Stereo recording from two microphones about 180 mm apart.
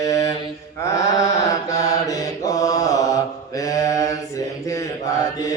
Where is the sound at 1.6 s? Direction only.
20° left (ahead or behind).